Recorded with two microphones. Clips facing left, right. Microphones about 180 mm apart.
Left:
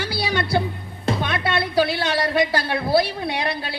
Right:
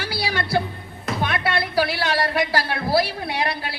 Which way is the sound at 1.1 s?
25° left (ahead or behind).